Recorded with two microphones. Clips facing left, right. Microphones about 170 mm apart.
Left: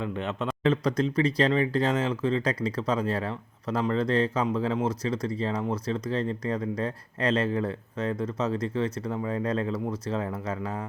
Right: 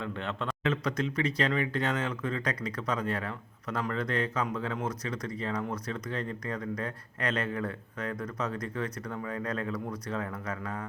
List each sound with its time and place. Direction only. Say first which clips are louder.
0.0 s speech: left 4 dB; 15° left (ahead or behind)
0.6 s speech: left 6 dB; 35° left (ahead or behind)